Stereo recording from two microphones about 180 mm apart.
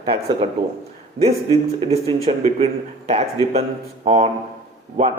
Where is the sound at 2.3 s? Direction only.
35° right (ahead or behind).